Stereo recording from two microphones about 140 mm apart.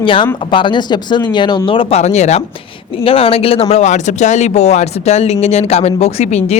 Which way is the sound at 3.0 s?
40° left (ahead or behind).